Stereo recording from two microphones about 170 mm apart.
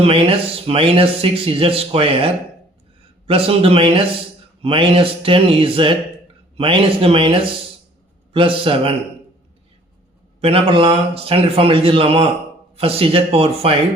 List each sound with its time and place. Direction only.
0.0 s speech: 35° right (ahead or behind)
10.4 s speech: 30° right (ahead or behind)